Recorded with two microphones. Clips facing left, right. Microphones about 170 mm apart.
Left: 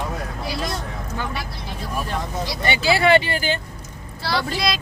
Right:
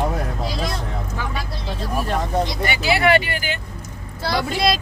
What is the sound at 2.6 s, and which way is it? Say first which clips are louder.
Speech: even; 25° left (ahead or behind).